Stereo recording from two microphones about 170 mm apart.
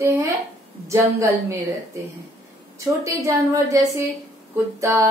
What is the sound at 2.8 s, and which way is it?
Speech, 20° right (ahead or behind).